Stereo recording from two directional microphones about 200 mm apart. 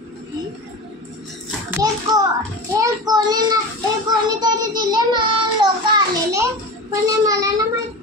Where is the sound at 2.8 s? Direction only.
20° right (ahead or behind).